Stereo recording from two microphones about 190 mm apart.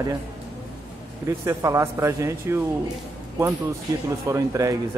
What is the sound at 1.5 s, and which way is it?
Speech, 15° right (ahead or behind).